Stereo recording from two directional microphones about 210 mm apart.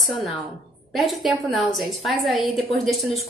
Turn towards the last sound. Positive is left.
turn(degrees=0)  # may be behind; listen again after turning